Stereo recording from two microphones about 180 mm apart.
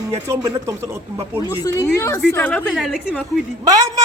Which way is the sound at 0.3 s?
15° right (ahead or behind).